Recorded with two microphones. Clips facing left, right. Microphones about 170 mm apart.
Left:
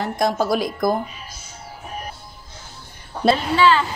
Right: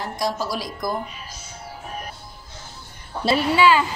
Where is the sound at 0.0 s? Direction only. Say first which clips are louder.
Left 5 dB; 55° left (ahead or behind).